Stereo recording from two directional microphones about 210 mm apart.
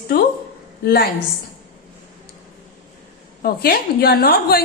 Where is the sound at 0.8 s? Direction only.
50° left (ahead or behind).